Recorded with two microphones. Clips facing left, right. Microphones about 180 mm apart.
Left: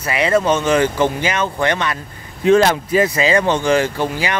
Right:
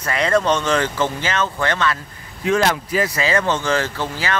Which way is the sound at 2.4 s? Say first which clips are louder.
Left 6 dB; 25° left (ahead or behind).